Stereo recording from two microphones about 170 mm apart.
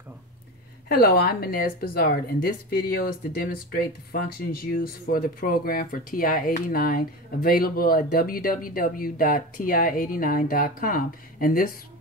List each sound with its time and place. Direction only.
0.8 s speech: 60° left (ahead or behind)